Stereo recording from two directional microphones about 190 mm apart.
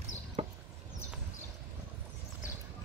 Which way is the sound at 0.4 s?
35° right (ahead or behind).